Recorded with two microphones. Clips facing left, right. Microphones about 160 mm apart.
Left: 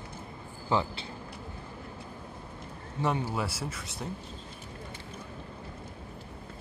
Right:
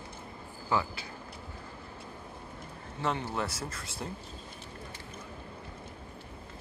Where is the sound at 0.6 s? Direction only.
20° left (ahead or behind).